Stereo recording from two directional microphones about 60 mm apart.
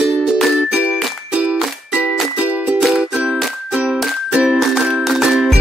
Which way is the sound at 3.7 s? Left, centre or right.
Centre.